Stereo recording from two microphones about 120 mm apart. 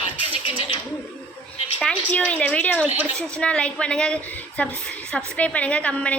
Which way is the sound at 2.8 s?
15° right (ahead or behind).